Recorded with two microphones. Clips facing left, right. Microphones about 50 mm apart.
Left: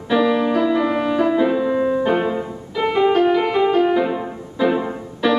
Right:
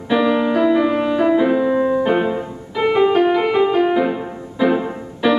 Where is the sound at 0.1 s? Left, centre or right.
Centre.